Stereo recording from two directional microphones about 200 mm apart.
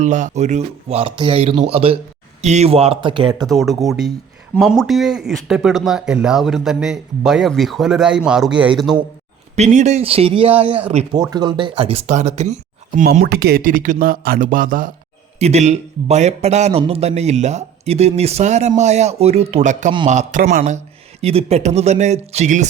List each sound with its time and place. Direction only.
0.0 s speech: 40° right (ahead or behind)
3.5 s speech: centre (ahead or behind)
9.6 s speech: 35° right (ahead or behind)
15.4 s speech: 35° right (ahead or behind)
21.2 s speech: 30° right (ahead or behind)